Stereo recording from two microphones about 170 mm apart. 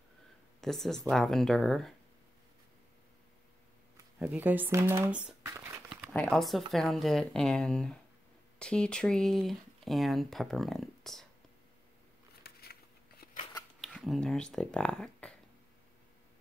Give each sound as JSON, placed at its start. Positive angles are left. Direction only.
{"t": 0.6, "sound": "speech", "side_deg": 0}
{"t": 4.3, "sound": "speech", "side_deg": -10}
{"t": 6.1, "sound": "speech", "side_deg": 5}
{"t": 12.4, "sound": "a sound", "side_deg": 65}
{"t": 13.2, "sound": "scissors", "side_deg": 65}
{"t": 13.7, "sound": "speech", "side_deg": 0}